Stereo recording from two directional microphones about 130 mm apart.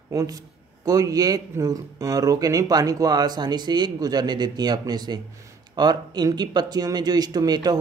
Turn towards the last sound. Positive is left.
turn(degrees=-30)  # may be behind; listen again after turning